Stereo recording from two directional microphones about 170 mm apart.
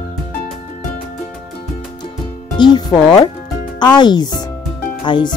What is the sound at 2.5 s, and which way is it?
Music, 25° left (ahead or behind).